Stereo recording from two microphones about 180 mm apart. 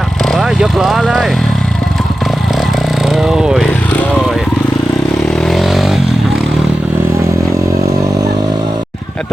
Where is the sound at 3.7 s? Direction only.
10° left (ahead or behind).